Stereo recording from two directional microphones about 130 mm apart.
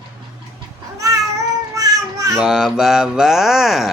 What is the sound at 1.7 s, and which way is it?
Child singing, 30° right (ahead or behind).